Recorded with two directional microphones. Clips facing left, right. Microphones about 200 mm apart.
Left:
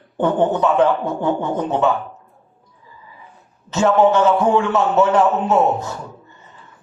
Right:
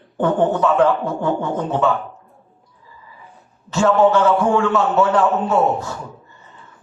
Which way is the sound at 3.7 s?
20° left (ahead or behind).